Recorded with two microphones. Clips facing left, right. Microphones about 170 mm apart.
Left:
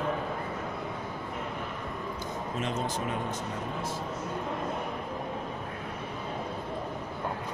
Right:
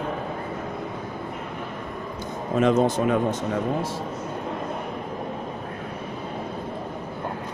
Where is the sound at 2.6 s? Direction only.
70° right (ahead or behind).